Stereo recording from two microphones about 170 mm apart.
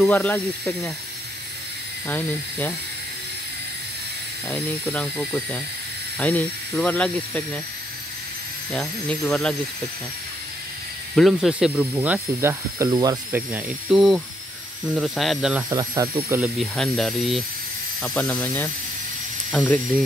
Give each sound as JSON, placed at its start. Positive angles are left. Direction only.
{"t": 0.0, "sound": "speech", "side_deg": 10}
{"t": 2.0, "sound": "speech", "side_deg": 10}
{"t": 4.5, "sound": "speech", "side_deg": 10}
{"t": 8.7, "sound": "speech", "side_deg": 5}
{"t": 11.1, "sound": "speech", "side_deg": 0}
{"t": 13.3, "sound": "speech", "side_deg": -5}
{"t": 15.7, "sound": "speech", "side_deg": -25}
{"t": 16.5, "sound": "speech", "side_deg": 5}